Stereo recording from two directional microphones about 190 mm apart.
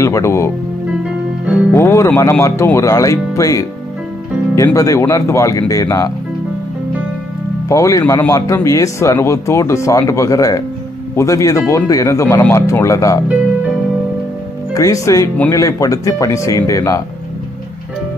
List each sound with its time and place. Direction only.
0.0 s speech: 15° left (ahead or behind)
1.4 s music: 5° right (ahead or behind)
1.7 s speech: 15° left (ahead or behind)
7.6 s speech: 15° left (ahead or behind)
14.7 s speech: 15° left (ahead or behind)